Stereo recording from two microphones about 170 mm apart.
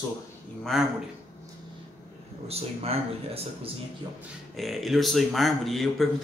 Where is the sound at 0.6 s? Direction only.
Centre (ahead or behind).